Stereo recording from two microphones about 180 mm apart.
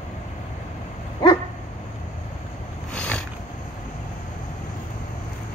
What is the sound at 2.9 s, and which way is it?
Boat, 5° left (ahead or behind).